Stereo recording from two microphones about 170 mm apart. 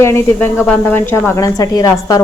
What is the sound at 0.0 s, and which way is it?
A woman's voice, 15° left (ahead or behind).